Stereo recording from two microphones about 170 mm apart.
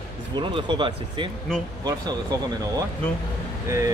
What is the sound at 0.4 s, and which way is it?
Speech, 30° right (ahead or behind).